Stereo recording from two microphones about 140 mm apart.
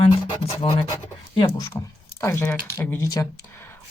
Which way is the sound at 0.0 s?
40° left (ahead or behind).